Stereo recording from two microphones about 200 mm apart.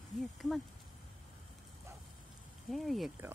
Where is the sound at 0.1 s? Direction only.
Centre (ahead or behind).